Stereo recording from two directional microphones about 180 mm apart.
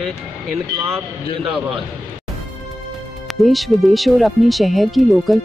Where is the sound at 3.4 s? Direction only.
Centre (ahead or behind).